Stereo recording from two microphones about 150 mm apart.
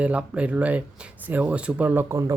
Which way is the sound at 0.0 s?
10° right (ahead or behind).